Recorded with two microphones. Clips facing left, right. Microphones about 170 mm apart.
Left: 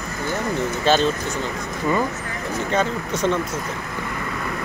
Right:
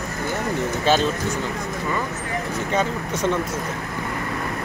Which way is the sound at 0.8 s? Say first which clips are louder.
Left 1 dB; 10° right (ahead or behind).